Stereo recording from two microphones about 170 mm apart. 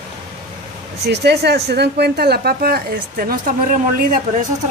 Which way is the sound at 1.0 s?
80° right.